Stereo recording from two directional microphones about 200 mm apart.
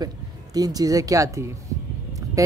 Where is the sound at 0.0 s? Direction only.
20° right (ahead or behind).